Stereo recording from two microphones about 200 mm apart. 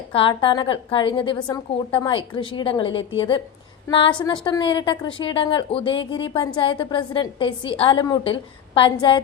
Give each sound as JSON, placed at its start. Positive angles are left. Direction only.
{"t": 0.1, "sound": "a woman's voice", "side_deg": 25}